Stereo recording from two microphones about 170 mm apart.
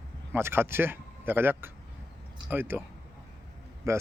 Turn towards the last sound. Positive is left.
turn(degrees=-15)  # may be behind; listen again after turning